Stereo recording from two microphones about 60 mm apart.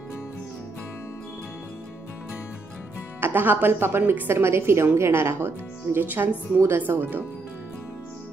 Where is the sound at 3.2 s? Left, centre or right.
Right.